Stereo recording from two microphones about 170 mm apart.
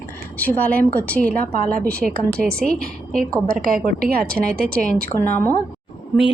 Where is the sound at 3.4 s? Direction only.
55° right (ahead or behind).